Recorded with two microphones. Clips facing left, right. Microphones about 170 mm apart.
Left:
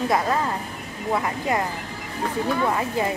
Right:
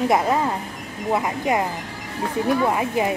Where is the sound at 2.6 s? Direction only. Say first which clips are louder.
Right 2 dB; 15° right (ahead or behind).